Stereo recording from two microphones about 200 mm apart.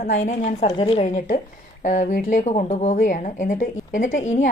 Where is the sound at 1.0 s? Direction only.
40° left (ahead or behind).